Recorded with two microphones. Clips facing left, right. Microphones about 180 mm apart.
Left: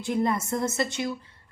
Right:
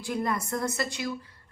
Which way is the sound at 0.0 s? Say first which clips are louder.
Left 4 dB; 25° left (ahead or behind).